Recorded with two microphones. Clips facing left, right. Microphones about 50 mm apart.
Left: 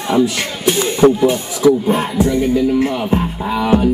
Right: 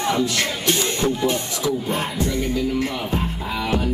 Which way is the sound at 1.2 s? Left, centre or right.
Centre.